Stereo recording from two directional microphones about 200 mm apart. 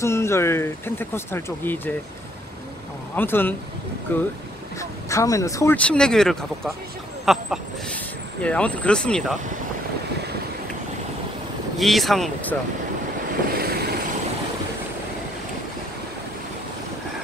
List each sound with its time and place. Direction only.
0.0 s speech: 15° left (ahead or behind)
3.2 s speech: 10° left (ahead or behind)
11.8 s speech: centre (ahead or behind)
13.6 s vehicle: 50° right (ahead or behind)